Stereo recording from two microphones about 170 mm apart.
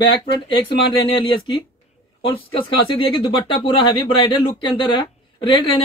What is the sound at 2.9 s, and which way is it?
Speech, 30° left (ahead or behind).